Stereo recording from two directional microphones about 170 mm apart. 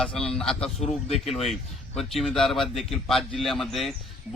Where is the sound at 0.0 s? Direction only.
5° left (ahead or behind).